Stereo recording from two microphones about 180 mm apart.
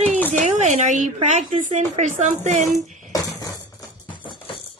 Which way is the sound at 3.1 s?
20° left (ahead or behind).